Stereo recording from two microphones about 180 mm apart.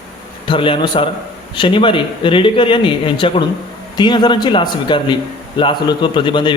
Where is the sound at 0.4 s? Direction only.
30° left (ahead or behind).